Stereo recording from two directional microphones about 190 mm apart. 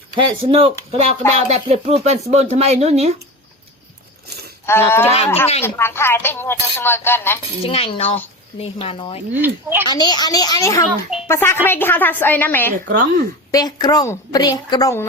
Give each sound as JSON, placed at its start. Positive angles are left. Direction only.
{"t": 0.2, "sound": "speech", "side_deg": -25}
{"t": 4.6, "sound": "speech", "side_deg": 10}
{"t": 7.7, "sound": "speech", "side_deg": 30}
{"t": 9.4, "sound": "speech", "side_deg": -10}
{"t": 9.8, "sound": "a woman's voice", "side_deg": 20}
{"t": 12.9, "sound": "speech", "side_deg": -50}
{"t": 13.5, "sound": "a woman's voice", "side_deg": 20}